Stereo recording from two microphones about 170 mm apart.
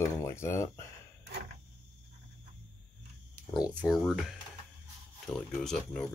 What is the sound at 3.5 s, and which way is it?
Speech, 5° right (ahead or behind).